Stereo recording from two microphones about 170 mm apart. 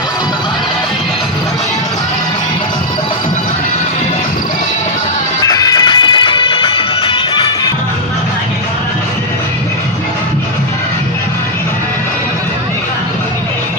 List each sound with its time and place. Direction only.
5.5 s music: 20° left (ahead or behind)